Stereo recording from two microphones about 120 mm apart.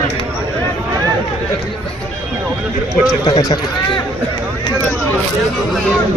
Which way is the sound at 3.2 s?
30° left (ahead or behind).